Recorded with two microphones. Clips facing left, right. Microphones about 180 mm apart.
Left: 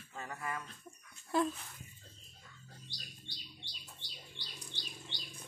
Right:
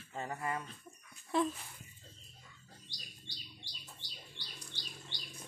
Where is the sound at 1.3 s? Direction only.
Centre (ahead or behind).